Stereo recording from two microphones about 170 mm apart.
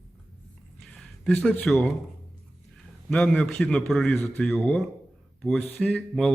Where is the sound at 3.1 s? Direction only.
10° left (ahead or behind).